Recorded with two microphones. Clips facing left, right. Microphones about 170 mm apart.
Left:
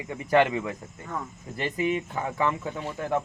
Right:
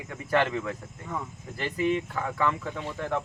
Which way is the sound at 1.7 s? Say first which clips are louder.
Right 1 dB; 10° left (ahead or behind).